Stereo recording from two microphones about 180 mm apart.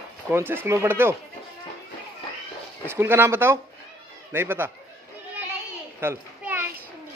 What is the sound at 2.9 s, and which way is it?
Speech, 15° right (ahead or behind).